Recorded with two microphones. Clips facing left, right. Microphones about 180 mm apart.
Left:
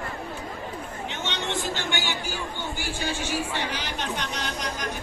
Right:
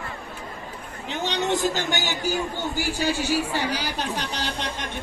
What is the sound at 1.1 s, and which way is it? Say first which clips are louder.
A man's voice: right 8 dB; 35° right (ahead or behind).